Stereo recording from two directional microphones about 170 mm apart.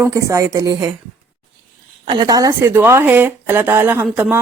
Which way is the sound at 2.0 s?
25° right (ahead or behind).